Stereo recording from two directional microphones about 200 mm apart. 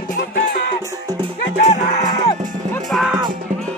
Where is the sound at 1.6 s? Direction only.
35° left (ahead or behind).